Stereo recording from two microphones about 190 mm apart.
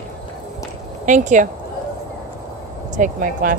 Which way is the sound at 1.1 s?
40° right (ahead or behind).